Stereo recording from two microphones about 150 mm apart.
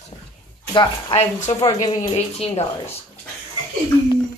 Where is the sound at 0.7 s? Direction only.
30° left (ahead or behind).